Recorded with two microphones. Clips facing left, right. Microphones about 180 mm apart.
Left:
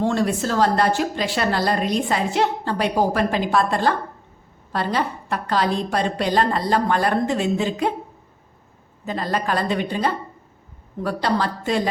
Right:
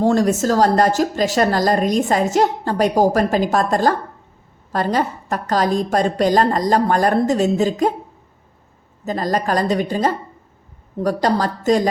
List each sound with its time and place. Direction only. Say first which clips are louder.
0.0 s a woman's voice: right 5 dB; 40° right (ahead or behind)
9.0 s a woman's voice: right 4 dB; 40° right (ahead or behind)